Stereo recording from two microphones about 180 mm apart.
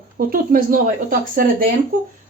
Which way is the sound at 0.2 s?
55° right (ahead or behind).